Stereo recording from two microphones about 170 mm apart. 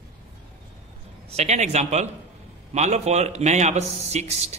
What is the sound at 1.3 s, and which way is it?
A man's voice, 40° right (ahead or behind).